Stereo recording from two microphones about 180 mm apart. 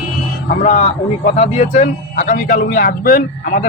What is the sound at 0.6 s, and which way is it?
A man's voice, 40° left (ahead or behind).